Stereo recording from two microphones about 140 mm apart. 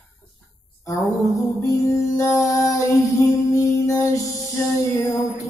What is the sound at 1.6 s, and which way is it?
Music, 25° left (ahead or behind).